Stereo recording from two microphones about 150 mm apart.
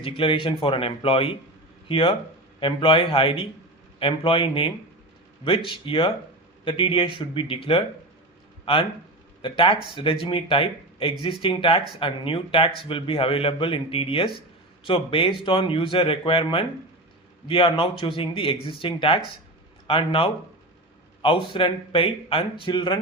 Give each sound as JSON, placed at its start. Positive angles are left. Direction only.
{"t": 0.0, "sound": "a man's voice", "side_deg": 35}